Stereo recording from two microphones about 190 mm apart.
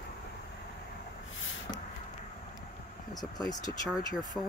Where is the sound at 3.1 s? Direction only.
20° left (ahead or behind).